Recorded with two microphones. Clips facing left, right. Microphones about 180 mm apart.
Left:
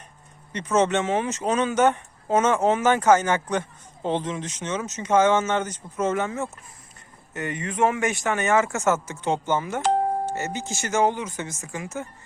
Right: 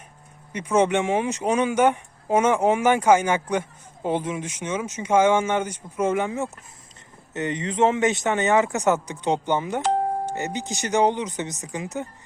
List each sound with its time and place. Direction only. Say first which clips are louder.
0.5 s speech: right 1 dB; 10° right (ahead or behind)